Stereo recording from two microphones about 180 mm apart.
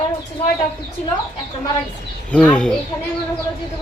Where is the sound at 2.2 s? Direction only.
5° left (ahead or behind).